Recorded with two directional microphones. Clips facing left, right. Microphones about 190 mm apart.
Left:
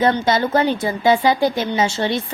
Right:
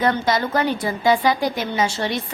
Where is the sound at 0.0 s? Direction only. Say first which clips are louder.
Left 3 dB; 25° left (ahead or behind).